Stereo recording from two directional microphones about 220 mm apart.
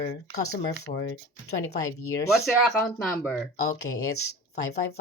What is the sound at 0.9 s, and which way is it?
Speech, 50° left (ahead or behind).